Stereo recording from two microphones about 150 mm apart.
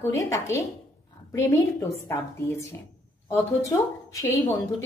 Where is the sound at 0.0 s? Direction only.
20° left (ahead or behind).